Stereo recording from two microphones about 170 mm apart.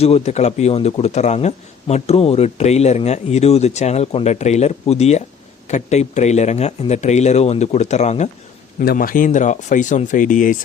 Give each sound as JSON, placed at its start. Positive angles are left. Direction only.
{"t": 0.0, "sound": "a man's voice", "side_deg": 40}
{"t": 8.8, "sound": "speech", "side_deg": 60}